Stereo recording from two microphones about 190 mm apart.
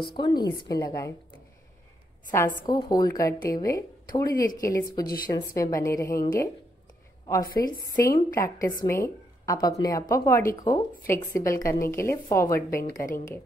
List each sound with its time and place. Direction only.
0.0 s a woman's voice: 25° left (ahead or behind)
2.6 s speech: 20° left (ahead or behind)
4.4 s a woman's voice: 45° left (ahead or behind)
4.6 s a woman's voice: 20° left (ahead or behind)
7.4 s a woman's voice: 50° left (ahead or behind)
8.4 s a woman's voice: 15° left (ahead or behind)